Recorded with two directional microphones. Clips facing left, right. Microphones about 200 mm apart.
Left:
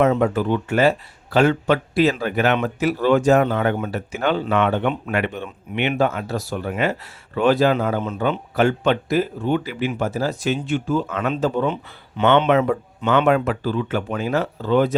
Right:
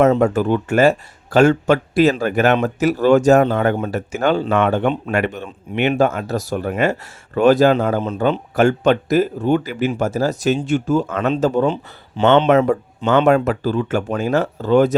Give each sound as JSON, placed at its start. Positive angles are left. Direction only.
{"t": 0.0, "sound": "speech", "side_deg": -45}
{"t": 8.0, "sound": "speech", "side_deg": -35}
{"t": 8.5, "sound": "speech", "side_deg": -45}
{"t": 11.6, "sound": "speech", "side_deg": -30}
{"t": 12.5, "sound": "speech", "side_deg": -45}